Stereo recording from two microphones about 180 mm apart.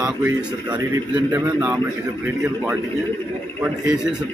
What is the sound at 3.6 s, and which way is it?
Speech, 5° right (ahead or behind).